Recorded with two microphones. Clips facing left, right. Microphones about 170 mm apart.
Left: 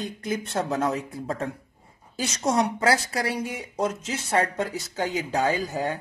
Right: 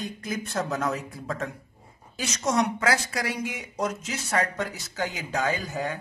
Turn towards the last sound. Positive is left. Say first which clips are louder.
# left 3 dB
turn(degrees=30)  # may be behind; listen again after turning